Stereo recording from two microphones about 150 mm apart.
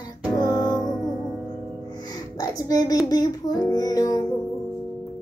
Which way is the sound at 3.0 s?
25° left (ahead or behind).